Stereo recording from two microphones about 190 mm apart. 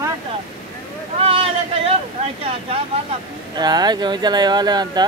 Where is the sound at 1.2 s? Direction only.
30° right (ahead or behind).